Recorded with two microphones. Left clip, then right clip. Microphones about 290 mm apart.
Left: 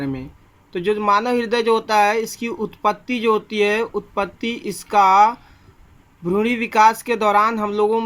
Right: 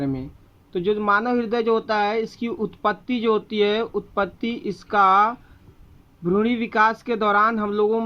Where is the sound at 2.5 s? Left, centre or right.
Left.